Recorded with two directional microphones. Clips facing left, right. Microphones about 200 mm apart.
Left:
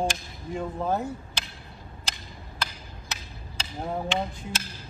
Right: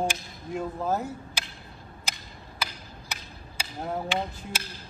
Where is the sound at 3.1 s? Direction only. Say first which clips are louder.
Left 1 dB; 10° right (ahead or behind).